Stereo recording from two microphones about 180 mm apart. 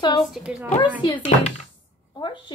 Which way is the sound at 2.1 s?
25° left (ahead or behind).